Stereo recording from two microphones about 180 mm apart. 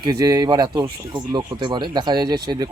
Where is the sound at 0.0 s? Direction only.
20° right (ahead or behind).